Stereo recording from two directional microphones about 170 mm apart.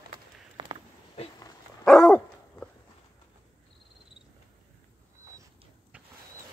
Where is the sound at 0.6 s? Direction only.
25° right (ahead or behind).